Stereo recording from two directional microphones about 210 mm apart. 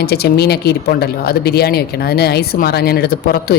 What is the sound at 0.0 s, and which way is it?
Speech, 50° left (ahead or behind).